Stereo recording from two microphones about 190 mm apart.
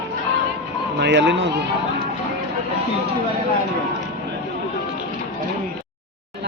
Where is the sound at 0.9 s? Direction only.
65° right (ahead or behind).